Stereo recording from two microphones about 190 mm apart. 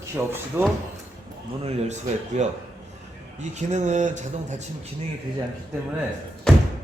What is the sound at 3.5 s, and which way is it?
Speech, 40° right (ahead or behind).